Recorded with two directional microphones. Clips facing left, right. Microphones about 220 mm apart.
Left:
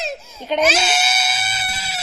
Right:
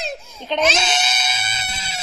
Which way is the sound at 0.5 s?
10° left (ahead or behind).